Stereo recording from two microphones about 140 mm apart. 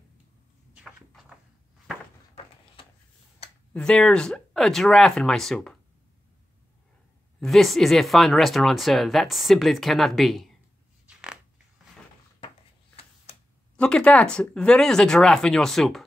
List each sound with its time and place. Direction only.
0.7 s cupboard open or close: 5° right (ahead or behind)
2.3 s a sound: 40° left (ahead or behind)
3.7 s speech: 5° left (ahead or behind)
7.3 s speech: centre (ahead or behind)
11.1 s a sound: 5° right (ahead or behind)
13.7 s speech: 5° left (ahead or behind)